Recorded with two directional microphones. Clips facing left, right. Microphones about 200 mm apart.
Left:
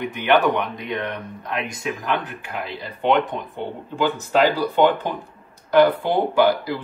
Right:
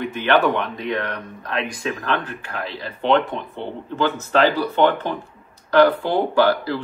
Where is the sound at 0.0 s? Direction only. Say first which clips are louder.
Even; 15° left (ahead or behind).